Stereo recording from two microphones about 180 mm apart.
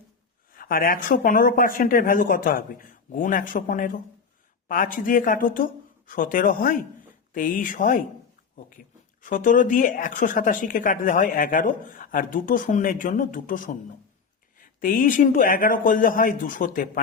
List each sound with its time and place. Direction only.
0.5 s a woman's voice: 55° left (ahead or behind)
9.2 s a woman's voice: 45° left (ahead or behind)
14.8 s a woman's voice: 50° left (ahead or behind)